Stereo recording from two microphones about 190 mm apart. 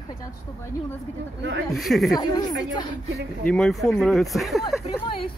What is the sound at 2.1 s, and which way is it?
Speech, 20° left (ahead or behind).